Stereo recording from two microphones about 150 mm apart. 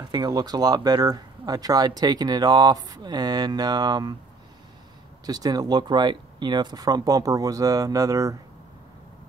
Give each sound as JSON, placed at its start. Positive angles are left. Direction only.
{"t": 0.0, "sound": "speech", "side_deg": -30}
{"t": 5.2, "sound": "speech", "side_deg": -25}